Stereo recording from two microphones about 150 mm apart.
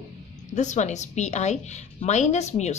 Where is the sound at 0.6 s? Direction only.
55° left (ahead or behind).